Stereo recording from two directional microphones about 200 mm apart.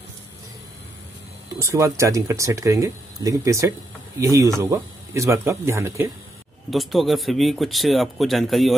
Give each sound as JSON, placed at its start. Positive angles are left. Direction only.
{"t": 1.6, "sound": "speech", "side_deg": -15}
{"t": 6.7, "sound": "speech", "side_deg": 0}